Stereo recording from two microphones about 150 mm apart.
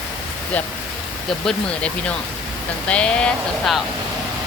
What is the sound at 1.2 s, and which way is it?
Speech, 5° left (ahead or behind).